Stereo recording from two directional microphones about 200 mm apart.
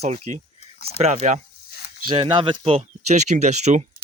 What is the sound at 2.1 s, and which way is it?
Speech, 25° right (ahead or behind).